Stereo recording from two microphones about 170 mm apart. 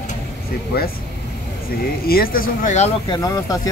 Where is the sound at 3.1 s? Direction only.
20° left (ahead or behind).